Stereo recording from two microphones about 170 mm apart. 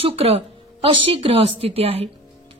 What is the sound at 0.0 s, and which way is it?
A woman's voice, 35° right (ahead or behind).